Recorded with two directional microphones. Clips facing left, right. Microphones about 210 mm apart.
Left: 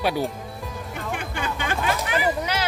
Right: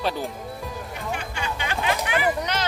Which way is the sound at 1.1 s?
50° left (ahead or behind).